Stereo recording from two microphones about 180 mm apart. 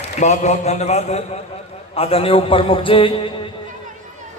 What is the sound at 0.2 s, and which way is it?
A man's voice, 40° left (ahead or behind).